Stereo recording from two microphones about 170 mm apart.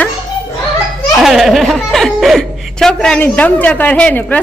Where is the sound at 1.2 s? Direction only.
Centre (ahead or behind).